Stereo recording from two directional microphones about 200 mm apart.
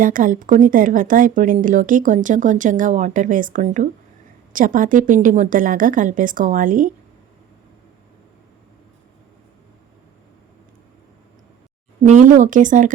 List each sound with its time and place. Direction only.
0.0 s speech: 40° right (ahead or behind)
12.0 s speech: 40° right (ahead or behind)